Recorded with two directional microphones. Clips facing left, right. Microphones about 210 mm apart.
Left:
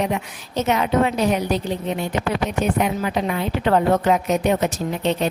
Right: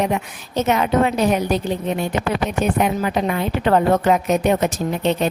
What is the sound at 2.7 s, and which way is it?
A woman's voice, 50° right (ahead or behind).